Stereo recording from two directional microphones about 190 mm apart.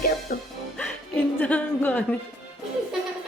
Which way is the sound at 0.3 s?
45° left (ahead or behind).